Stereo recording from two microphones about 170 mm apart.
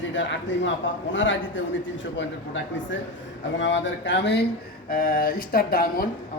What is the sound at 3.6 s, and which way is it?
Speech, 90° left.